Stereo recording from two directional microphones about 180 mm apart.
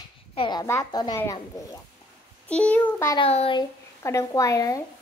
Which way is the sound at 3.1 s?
35° left (ahead or behind).